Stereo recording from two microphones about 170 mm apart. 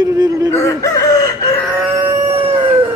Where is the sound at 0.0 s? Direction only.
25° right (ahead or behind).